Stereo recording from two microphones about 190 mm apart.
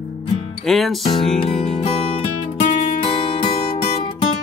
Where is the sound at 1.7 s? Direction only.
30° left (ahead or behind).